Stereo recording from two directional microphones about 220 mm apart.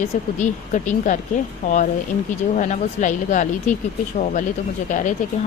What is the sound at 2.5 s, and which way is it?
Speech, 35° left (ahead or behind).